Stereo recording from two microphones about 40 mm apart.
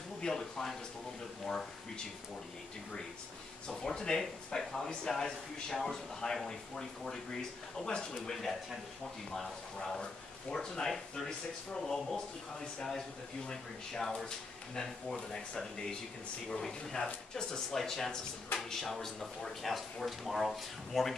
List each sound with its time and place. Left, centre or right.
0.3 s speech: centre
3.6 s speech: left
7.8 s speech: left
8.3 s speech: centre